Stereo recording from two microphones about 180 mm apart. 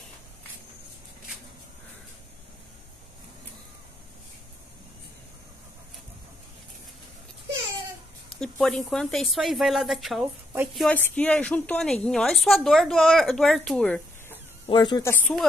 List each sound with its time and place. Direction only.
8.4 s a woman's voice: 5° left (ahead or behind)
14.7 s speech: 25° left (ahead or behind)
15.0 s speech: 5° left (ahead or behind)